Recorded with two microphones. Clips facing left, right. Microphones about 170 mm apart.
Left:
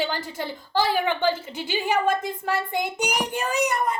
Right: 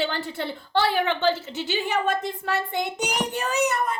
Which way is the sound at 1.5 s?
10° left (ahead or behind).